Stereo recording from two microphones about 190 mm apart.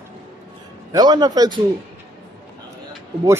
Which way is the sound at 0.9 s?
20° right (ahead or behind).